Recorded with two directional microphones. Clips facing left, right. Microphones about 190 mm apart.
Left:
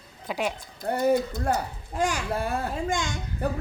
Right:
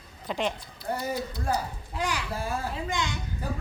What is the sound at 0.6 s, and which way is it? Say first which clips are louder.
A child's voice: left 5 dB; 55° left (ahead or behind).